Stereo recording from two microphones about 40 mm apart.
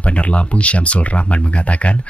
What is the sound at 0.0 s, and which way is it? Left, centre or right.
Speech, left.